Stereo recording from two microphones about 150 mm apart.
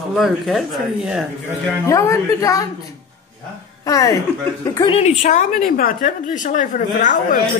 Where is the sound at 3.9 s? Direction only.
25° left (ahead or behind).